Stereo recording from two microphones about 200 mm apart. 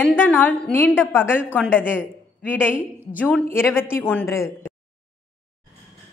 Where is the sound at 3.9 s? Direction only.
10° left (ahead or behind).